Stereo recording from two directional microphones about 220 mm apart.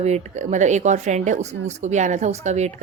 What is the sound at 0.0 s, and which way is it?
Speech, 30° right (ahead or behind).